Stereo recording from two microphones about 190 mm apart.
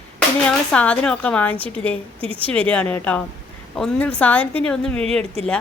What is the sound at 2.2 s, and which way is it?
Speech, 30° right (ahead or behind).